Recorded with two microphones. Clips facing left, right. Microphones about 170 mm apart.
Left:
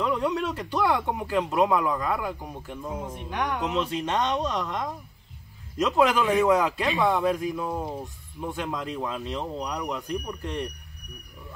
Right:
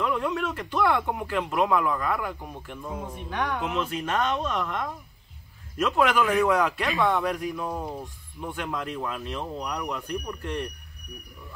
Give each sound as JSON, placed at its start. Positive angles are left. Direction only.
{"t": 0.0, "sound": "speech", "side_deg": 20}
{"t": 2.9, "sound": "speech", "side_deg": 0}
{"t": 3.2, "sound": "speech", "side_deg": 15}
{"t": 8.0, "sound": "speech", "side_deg": 5}
{"t": 8.6, "sound": "speech", "side_deg": 20}